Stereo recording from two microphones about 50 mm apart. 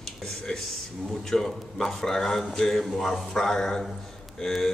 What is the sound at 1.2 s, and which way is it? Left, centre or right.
Speech, centre.